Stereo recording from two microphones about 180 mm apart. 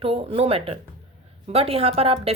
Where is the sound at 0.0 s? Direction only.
30° right (ahead or behind).